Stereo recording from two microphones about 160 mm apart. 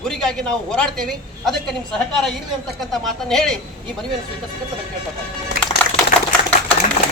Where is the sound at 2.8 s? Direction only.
Centre (ahead or behind).